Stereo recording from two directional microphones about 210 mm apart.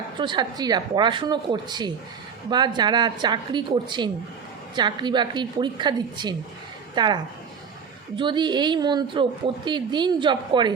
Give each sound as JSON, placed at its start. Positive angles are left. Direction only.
{"t": 0.2, "sound": "speech", "side_deg": -20}